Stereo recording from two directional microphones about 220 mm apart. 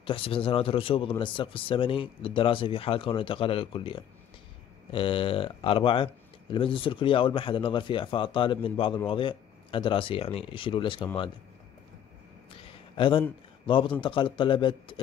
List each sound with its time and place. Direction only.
0.0 s speech: 25° left (ahead or behind)
12.9 s speech: 25° left (ahead or behind)